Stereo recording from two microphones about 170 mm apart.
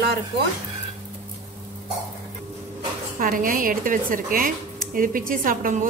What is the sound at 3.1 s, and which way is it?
Speech, 55° right (ahead or behind).